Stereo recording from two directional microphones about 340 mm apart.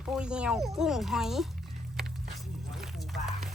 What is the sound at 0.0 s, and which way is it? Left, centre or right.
Speech, centre.